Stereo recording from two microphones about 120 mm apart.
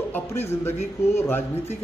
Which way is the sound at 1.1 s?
20° left (ahead or behind).